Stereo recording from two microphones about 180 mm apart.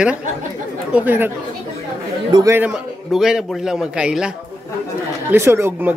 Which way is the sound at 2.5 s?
5° right (ahead or behind).